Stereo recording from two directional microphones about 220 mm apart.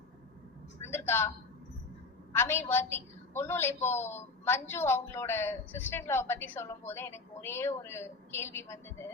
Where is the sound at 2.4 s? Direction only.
10° left (ahead or behind).